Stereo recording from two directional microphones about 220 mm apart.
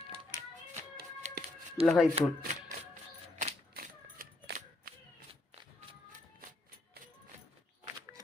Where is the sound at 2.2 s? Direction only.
35° right (ahead or behind).